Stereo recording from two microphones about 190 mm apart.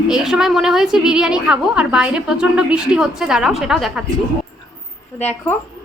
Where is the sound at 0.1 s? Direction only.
Centre (ahead or behind).